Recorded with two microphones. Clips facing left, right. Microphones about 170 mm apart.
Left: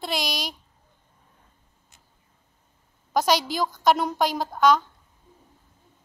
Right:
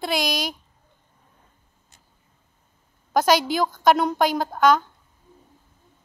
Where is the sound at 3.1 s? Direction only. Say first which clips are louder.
Right 3 dB; centre (ahead or behind).